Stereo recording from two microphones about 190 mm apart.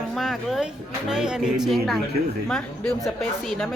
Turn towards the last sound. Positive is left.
turn(degrees=5)  # may be behind; listen again after turning